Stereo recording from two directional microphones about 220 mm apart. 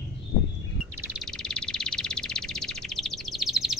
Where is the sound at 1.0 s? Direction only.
Centre (ahead or behind).